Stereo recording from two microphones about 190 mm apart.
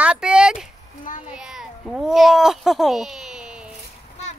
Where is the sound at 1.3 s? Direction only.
Centre (ahead or behind).